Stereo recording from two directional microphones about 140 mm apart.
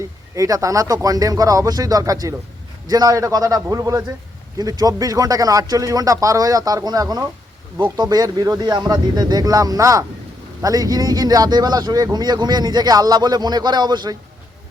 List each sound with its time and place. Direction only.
0.3 s speech: 25° right (ahead or behind)